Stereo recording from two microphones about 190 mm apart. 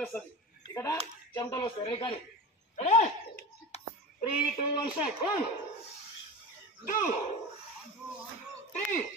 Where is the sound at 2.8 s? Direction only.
35° left (ahead or behind).